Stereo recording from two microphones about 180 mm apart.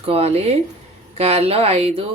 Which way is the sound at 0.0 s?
35° right (ahead or behind).